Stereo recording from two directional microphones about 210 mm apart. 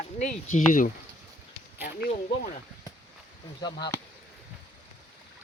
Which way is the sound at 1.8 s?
50° left (ahead or behind).